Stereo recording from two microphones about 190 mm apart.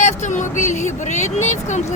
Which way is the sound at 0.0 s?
40° left (ahead or behind).